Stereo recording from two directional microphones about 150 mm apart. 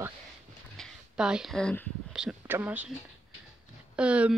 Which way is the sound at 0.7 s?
Centre (ahead or behind).